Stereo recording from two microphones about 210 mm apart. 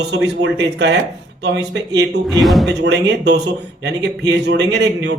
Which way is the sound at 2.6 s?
55° right (ahead or behind).